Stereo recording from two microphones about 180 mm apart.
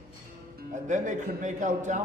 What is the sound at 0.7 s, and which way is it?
Speech, 45° right (ahead or behind).